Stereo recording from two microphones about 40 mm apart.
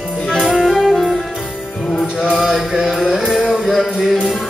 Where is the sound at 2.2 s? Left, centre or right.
Centre.